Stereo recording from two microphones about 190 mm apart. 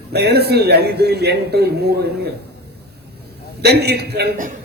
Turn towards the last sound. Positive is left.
turn(degrees=-60)  # may be behind; listen again after turning